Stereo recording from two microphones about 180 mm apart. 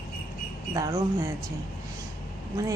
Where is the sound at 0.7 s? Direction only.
20° right (ahead or behind).